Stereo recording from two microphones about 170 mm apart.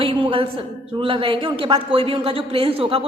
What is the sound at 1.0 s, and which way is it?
Speech, 30° right (ahead or behind).